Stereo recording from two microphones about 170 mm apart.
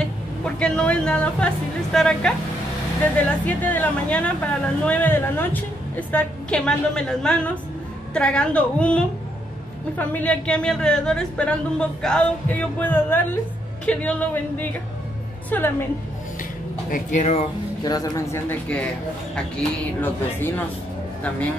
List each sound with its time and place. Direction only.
0.6 s a woman's voice: 5° left (ahead or behind)
16.9 s speech: 45° left (ahead or behind)
17.8 s a woman's voice: 20° left (ahead or behind)
20.0 s a woman's voice: 10° left (ahead or behind)